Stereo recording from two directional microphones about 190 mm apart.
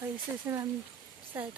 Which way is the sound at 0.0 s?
15° right (ahead or behind).